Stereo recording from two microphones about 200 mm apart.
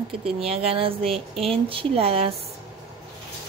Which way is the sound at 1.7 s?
30° right (ahead or behind).